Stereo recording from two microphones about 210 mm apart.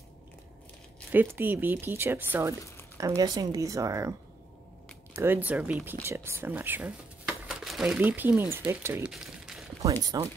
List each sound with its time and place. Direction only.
1.1 s speech: 10° right (ahead or behind)
5.1 s speech: 10° right (ahead or behind)
10.1 s speech: 20° right (ahead or behind)